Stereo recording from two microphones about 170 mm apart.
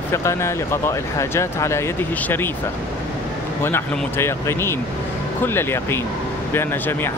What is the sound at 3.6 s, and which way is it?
Speech, 15° left (ahead or behind).